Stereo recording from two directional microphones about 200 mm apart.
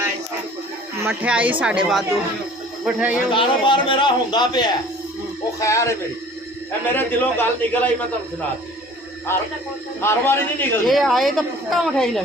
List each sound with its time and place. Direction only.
1.0 s a woman's voice: 5° right (ahead or behind)
3.3 s a man's voice: 25° left (ahead or behind)
6.9 s a man's voice: 10° left (ahead or behind)
10.0 s a man's voice: 10° left (ahead or behind)
10.8 s a woman's voice: centre (ahead or behind)